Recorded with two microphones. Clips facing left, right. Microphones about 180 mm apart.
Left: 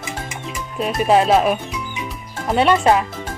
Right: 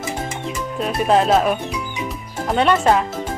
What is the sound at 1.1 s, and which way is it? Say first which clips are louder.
Speech: left 1 dB; 5° left (ahead or behind).